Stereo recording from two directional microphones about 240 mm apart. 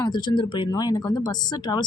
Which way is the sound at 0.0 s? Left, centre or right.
Centre.